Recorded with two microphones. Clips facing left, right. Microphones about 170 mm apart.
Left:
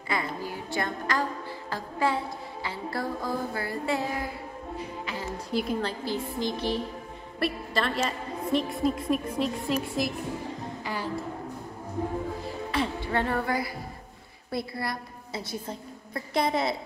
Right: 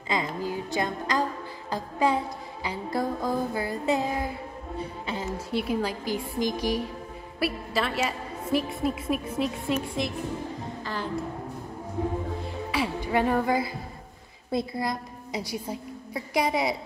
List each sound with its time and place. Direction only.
0.1 s music: 20° right (ahead or behind)
5.5 s a woman's voice: 5° right (ahead or behind)
10.8 s music: 10° left (ahead or behind)
12.7 s music: 10° right (ahead or behind)
14.5 s a woman's voice: 20° right (ahead or behind)